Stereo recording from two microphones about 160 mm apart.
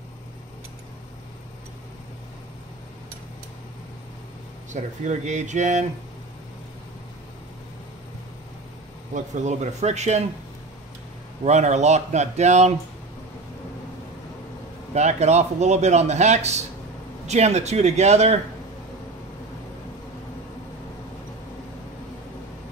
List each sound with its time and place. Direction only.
4.7 s speech: 45° right (ahead or behind)
9.1 s speech: 50° right (ahead or behind)
11.4 s speech: 45° right (ahead or behind)
15.0 s speech: 45° right (ahead or behind)